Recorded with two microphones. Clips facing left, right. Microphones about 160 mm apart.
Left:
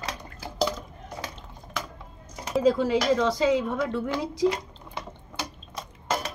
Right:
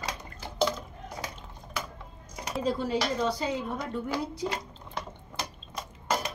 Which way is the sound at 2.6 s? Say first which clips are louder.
Left 7 dB; 90° left.